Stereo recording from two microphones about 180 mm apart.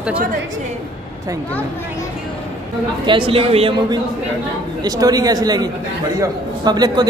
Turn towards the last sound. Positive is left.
turn(degrees=-20)  # may be behind; listen again after turning